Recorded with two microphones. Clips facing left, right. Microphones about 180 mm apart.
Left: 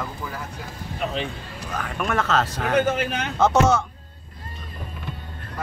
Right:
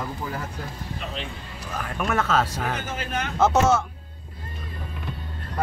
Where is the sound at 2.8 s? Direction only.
65° left (ahead or behind).